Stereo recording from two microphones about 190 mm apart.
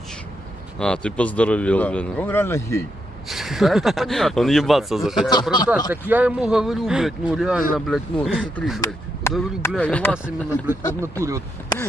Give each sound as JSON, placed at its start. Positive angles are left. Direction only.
{"t": 0.7, "sound": "speech", "side_deg": 5}
{"t": 3.3, "sound": "speech", "side_deg": 0}
{"t": 9.3, "sound": "chop", "side_deg": 15}
{"t": 9.8, "sound": "speech", "side_deg": 5}
{"t": 10.1, "sound": "speech", "side_deg": -10}